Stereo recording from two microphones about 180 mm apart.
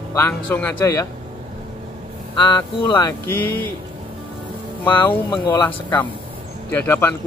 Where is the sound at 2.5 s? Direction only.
25° left (ahead or behind).